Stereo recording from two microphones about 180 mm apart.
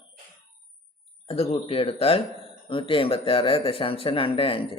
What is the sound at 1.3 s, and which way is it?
Speech, 35° left (ahead or behind).